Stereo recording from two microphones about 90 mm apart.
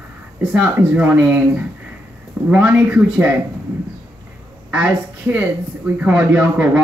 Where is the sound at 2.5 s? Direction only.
15° right (ahead or behind).